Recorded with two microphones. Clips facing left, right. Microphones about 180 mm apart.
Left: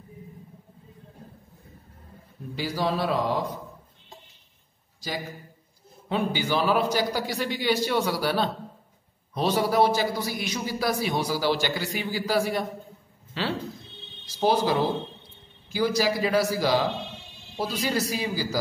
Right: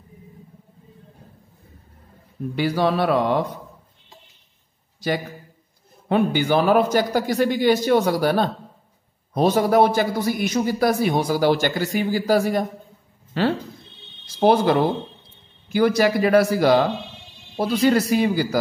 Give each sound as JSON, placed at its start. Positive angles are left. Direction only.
{"t": 2.5, "sound": "a man's voice", "side_deg": -60}
{"t": 6.0, "sound": "a man's voice", "side_deg": -55}